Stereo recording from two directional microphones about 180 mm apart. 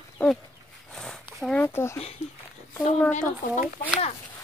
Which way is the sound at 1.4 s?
10° left (ahead or behind).